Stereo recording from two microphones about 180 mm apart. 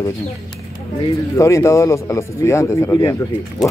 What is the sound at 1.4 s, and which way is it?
Speech, 15° left (ahead or behind).